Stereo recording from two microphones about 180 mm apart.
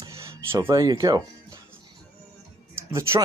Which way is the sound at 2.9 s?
15° right (ahead or behind).